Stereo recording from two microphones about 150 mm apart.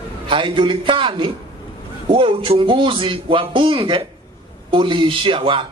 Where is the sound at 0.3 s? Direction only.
35° right (ahead or behind).